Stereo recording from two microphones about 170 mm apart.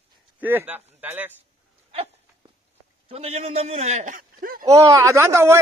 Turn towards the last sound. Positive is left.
turn(degrees=-15)  # may be behind; listen again after turning